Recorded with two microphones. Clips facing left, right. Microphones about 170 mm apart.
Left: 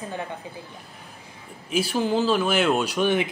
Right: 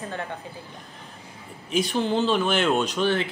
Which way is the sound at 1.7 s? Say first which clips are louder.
Even; 5° left (ahead or behind).